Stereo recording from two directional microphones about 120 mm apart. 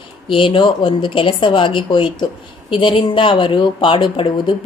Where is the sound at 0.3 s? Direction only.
45° left (ahead or behind).